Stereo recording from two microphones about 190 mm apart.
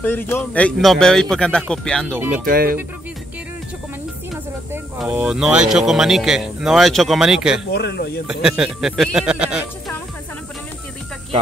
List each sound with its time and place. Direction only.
0.0 s speech: 10° left (ahead or behind)
2.4 s speech: 50° right (ahead or behind)
4.9 s speech: 10° right (ahead or behind)
7.7 s speech: 60° left (ahead or behind)
8.3 s speech: 5° right (ahead or behind)